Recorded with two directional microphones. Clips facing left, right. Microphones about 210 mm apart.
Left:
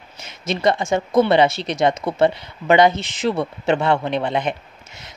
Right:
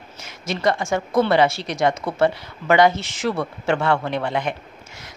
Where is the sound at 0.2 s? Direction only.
20° left (ahead or behind).